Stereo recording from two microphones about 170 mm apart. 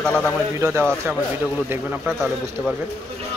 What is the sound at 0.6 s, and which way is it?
Speech, 15° right (ahead or behind).